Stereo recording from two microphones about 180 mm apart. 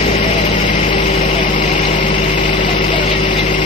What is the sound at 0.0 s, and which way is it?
Vehicle, 45° left (ahead or behind).